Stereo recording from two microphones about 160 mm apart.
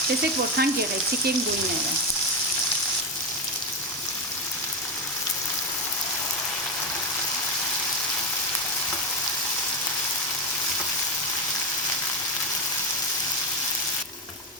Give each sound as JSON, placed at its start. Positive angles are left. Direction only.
{"t": 0.6, "sound": "frying", "side_deg": -75}